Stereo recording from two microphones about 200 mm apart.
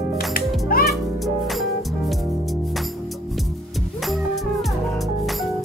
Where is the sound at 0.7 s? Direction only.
45° left (ahead or behind).